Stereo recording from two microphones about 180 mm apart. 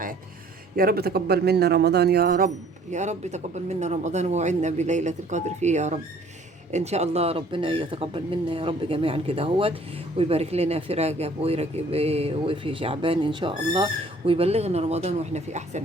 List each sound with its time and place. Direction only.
0.8 s speech: 55° right (ahead or behind)
2.9 s speech: 40° right (ahead or behind)